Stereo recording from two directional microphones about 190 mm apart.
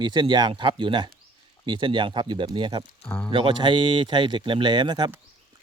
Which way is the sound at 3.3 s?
25° right (ahead or behind).